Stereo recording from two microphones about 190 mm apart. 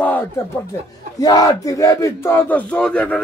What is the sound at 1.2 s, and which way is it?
Speech, 20° left (ahead or behind).